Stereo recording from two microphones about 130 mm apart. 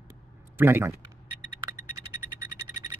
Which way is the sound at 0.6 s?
15° right (ahead or behind).